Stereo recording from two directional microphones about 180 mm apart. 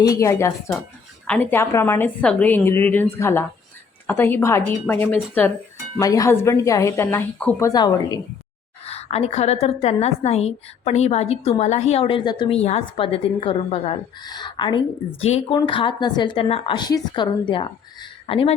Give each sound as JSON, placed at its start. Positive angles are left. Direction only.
{"t": 0.1, "sound": "a woman's voice", "side_deg": 15}
{"t": 7.7, "sound": "speech", "side_deg": 20}
{"t": 8.9, "sound": "a woman's voice", "side_deg": 35}